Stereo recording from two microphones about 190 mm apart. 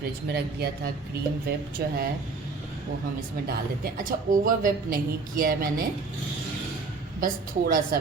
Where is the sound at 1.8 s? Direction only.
55° right (ahead or behind).